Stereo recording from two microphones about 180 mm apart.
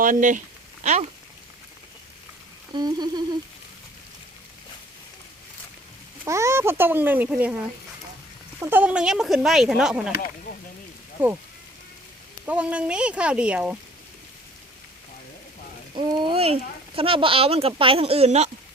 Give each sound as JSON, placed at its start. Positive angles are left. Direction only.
{"t": 0.0, "sound": "speech", "side_deg": -45}
{"t": 2.7, "sound": "frying", "side_deg": -25}
{"t": 6.2, "sound": "speech", "side_deg": -15}
{"t": 8.6, "sound": "speech", "side_deg": -10}
{"t": 11.2, "sound": "speech", "side_deg": -10}
{"t": 12.5, "sound": "speech", "side_deg": -5}
{"t": 16.0, "sound": "speech", "side_deg": -25}